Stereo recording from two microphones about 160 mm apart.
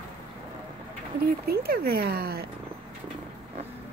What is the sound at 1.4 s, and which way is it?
Speech, 70° right (ahead or behind).